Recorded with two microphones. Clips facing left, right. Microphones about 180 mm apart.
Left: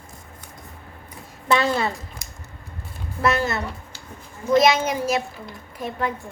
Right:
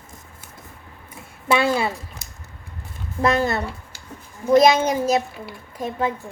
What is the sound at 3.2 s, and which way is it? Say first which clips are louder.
A woman's voice: right 2 dB; 30° right (ahead or behind).